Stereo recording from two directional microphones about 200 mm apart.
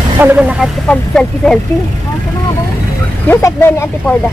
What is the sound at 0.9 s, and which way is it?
Speech, 5° left (ahead or behind).